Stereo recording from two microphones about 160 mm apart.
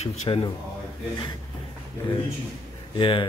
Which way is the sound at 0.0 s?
40° left (ahead or behind).